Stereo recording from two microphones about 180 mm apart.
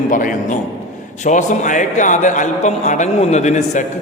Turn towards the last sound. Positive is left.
turn(degrees=40)  # may be behind; listen again after turning